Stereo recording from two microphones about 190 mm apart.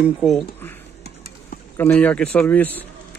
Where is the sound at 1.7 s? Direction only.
10° left (ahead or behind).